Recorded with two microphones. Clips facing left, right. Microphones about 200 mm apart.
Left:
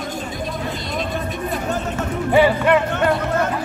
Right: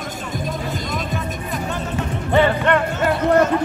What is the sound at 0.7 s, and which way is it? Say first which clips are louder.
Music: even; 45° right (ahead or behind).